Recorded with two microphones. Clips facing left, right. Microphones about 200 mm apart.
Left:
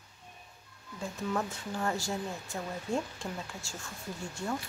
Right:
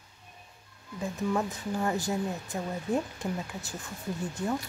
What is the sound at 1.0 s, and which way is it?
Speech, 15° right (ahead or behind).